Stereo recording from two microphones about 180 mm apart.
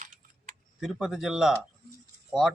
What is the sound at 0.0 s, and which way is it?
Typing, 45° right (ahead or behind).